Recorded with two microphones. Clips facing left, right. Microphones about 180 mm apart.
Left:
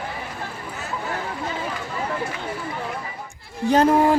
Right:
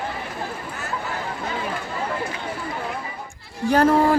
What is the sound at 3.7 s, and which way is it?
Speech, 15° left (ahead or behind).